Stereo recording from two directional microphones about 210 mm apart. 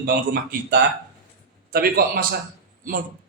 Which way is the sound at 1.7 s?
45° right (ahead or behind).